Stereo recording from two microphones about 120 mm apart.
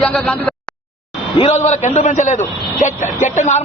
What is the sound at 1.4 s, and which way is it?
A man's voice, 70° left (ahead or behind).